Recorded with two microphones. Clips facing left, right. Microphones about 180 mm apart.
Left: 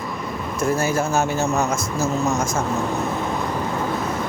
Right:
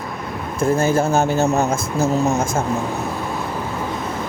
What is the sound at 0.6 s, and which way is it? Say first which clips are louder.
Speech: right 4 dB; 30° right (ahead or behind).